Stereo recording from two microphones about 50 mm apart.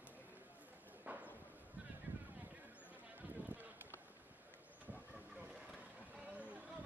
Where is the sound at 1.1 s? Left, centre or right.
Right.